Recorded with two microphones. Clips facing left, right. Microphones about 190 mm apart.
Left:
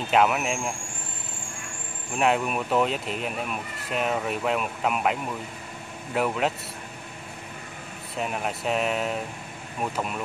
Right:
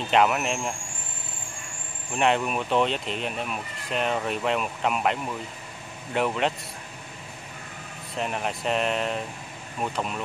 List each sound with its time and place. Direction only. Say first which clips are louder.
0.1 s speech: even; centre (ahead or behind)
2.1 s speech: even; centre (ahead or behind)
8.2 s speech: even; centre (ahead or behind)